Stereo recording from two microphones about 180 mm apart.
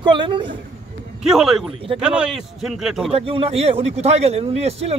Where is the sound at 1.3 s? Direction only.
Centre (ahead or behind).